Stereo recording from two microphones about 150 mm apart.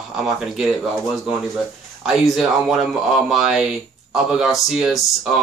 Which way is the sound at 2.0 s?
Centre (ahead or behind).